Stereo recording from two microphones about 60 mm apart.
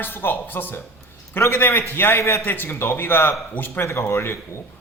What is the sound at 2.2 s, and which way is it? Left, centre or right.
Speech, left.